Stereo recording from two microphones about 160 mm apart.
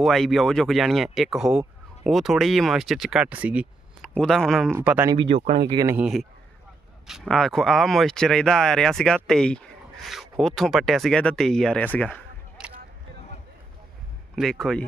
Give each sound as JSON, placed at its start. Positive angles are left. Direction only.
{"t": 0.0, "sound": "speech", "side_deg": 0}
{"t": 4.1, "sound": "speech", "side_deg": 5}
{"t": 4.7, "sound": "speech", "side_deg": -15}
{"t": 5.1, "sound": "speech", "side_deg": -35}
{"t": 5.9, "sound": "speech", "side_deg": -5}
{"t": 12.1, "sound": "a sound", "side_deg": -5}
{"t": 14.3, "sound": "speech", "side_deg": 0}